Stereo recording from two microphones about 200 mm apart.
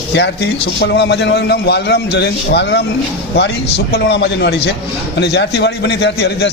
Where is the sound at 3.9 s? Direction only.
55° left (ahead or behind).